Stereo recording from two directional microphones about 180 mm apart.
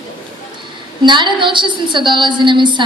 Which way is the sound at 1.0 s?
25° right (ahead or behind).